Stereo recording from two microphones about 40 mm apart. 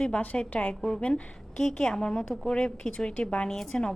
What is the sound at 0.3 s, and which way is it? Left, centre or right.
A woman's voice, left.